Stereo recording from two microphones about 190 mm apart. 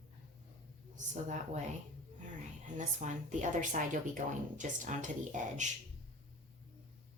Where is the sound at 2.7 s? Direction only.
40° right (ahead or behind).